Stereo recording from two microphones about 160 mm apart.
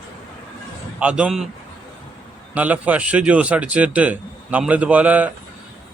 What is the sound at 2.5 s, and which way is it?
A man's voice, 10° right (ahead or behind).